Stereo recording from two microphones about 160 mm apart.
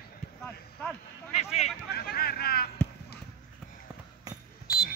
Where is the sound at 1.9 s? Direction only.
75° left (ahead or behind).